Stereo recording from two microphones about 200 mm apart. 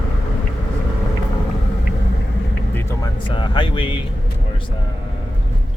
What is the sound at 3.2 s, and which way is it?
Speech, 25° left (ahead or behind).